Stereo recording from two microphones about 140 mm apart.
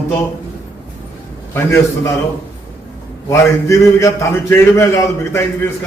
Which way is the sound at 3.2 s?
20° left (ahead or behind).